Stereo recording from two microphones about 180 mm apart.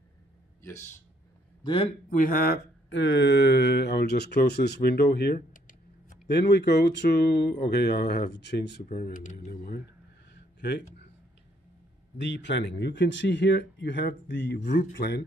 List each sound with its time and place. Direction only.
0.6 s speech: 15° left (ahead or behind)
1.6 s a man's voice: 30° left (ahead or behind)
2.0 s mantra: 50° left (ahead or behind)
6.2 s speech: 70° left (ahead or behind)
8.8 s speech: 50° left (ahead or behind)
10.3 s a sound: 70° left (ahead or behind)
12.2 s speech: 85° left
14.6 s speech: 50° left (ahead or behind)
15.0 s speech: 70° left (ahead or behind)